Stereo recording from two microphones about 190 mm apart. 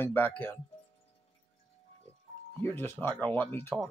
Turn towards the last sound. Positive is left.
turn(degrees=10)  # may be behind; listen again after turning